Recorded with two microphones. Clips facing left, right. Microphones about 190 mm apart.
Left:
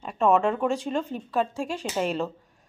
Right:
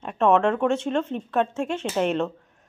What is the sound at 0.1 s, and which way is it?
Speech, centre (ahead or behind).